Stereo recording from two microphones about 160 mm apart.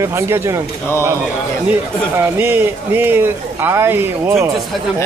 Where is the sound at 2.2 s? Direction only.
15° right (ahead or behind).